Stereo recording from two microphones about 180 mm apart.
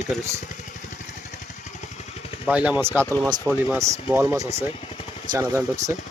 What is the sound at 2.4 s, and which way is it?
Speech, 10° right (ahead or behind).